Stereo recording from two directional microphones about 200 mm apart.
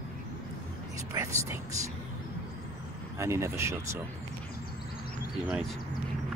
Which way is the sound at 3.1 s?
15° right (ahead or behind).